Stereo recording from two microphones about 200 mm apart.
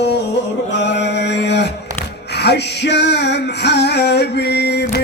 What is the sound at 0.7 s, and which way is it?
Mantra, 60° left (ahead or behind).